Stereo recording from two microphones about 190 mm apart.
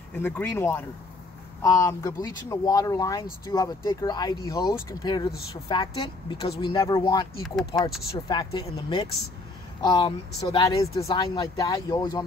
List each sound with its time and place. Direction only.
0.2 s speech: 10° left (ahead or behind)